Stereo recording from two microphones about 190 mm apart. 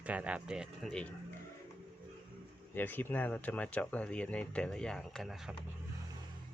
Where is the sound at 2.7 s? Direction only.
10° left (ahead or behind).